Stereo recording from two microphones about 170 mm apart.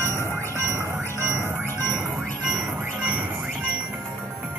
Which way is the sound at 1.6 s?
15° left (ahead or behind).